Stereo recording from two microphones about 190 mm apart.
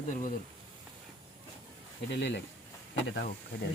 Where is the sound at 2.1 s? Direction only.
65° left (ahead or behind).